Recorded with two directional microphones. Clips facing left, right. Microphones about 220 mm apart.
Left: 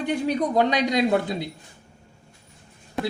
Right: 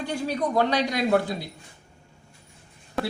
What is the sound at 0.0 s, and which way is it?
Speech, 20° left (ahead or behind).